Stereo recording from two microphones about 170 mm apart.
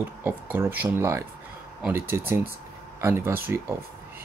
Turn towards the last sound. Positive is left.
turn(degrees=-15)  # may be behind; listen again after turning